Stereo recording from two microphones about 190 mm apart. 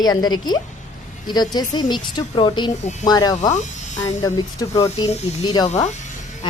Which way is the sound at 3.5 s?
40° left (ahead or behind).